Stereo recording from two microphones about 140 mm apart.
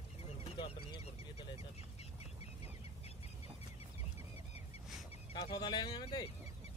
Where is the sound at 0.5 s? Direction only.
35° left (ahead or behind).